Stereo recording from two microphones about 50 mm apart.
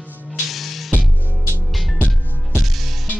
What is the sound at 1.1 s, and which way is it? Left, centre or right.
Music, right.